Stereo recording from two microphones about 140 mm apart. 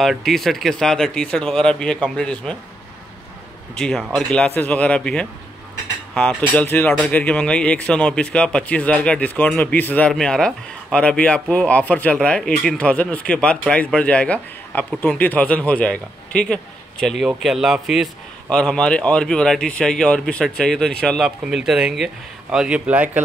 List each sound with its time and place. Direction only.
0.0 s speech: centre (ahead or behind)
3.7 s speech: 5° left (ahead or behind); by 23.2 s 10° right (ahead or behind)